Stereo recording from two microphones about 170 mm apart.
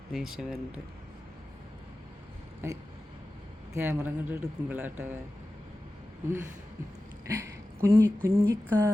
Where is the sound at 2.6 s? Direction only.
15° right (ahead or behind).